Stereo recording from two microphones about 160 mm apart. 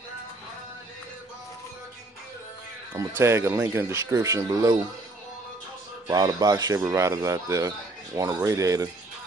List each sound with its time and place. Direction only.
2.9 s speech: 15° right (ahead or behind)
6.0 s speech: 25° right (ahead or behind)